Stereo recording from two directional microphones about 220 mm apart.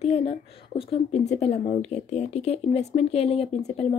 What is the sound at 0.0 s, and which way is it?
Speech, 30° left (ahead or behind).